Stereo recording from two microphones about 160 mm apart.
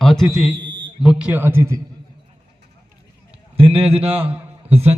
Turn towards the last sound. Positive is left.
turn(degrees=-40)  # may be behind; listen again after turning